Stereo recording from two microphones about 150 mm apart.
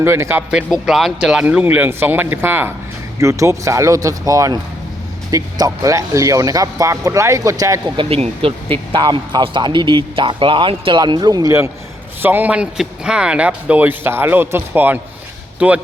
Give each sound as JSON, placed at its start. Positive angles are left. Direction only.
{"t": 0.0, "sound": "speech", "side_deg": -15}
{"t": 0.5, "sound": "speech", "side_deg": -5}
{"t": 8.1, "sound": "speech", "side_deg": -40}